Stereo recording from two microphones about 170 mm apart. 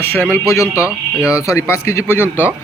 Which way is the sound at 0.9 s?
5° right (ahead or behind).